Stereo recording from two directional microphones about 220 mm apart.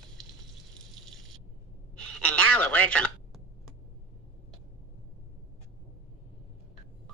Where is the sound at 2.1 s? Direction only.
5° left (ahead or behind).